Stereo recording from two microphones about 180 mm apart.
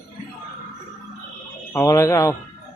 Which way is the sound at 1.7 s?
15° left (ahead or behind).